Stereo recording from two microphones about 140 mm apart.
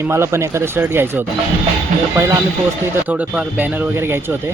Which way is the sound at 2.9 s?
10° right (ahead or behind).